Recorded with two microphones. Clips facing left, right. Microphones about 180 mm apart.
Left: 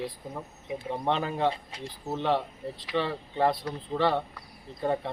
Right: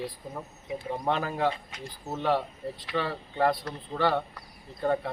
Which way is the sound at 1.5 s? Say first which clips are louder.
Left 1 dB; 30° left (ahead or behind).